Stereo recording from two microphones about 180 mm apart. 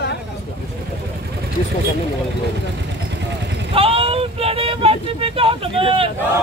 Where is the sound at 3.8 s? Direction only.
30° right (ahead or behind).